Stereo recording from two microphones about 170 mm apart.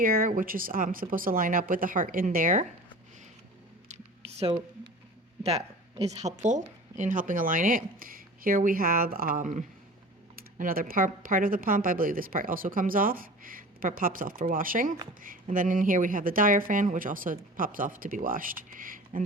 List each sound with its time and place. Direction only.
0.0 s speech: 55° right (ahead or behind)
3.8 s a sound: 40° right (ahead or behind)
5.4 s speech: 40° right (ahead or behind); by 19.2 s 55° right (ahead or behind)